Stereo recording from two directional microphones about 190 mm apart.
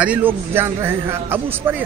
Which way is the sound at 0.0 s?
10° right (ahead or behind).